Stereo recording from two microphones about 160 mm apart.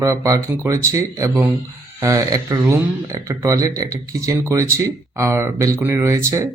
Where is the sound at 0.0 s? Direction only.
20° right (ahead or behind).